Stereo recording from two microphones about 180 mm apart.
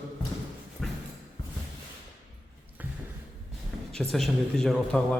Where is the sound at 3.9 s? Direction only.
5° left (ahead or behind).